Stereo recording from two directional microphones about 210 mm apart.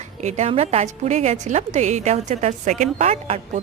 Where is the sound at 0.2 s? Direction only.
35° right (ahead or behind).